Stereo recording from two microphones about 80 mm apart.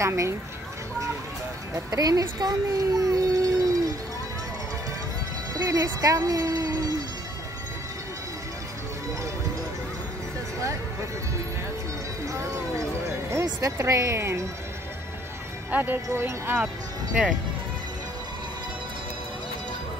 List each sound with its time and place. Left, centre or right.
0.0 s speech: right
1.9 s a child's voice: right
5.5 s speech: right
10.6 s a sound: right
12.3 s a sound: right
13.3 s speech: right
15.7 s speech: right